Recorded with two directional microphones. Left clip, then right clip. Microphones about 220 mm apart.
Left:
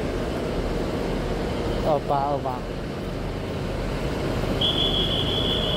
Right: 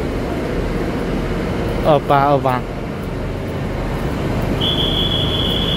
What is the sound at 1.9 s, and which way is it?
Speech, 25° right (ahead or behind).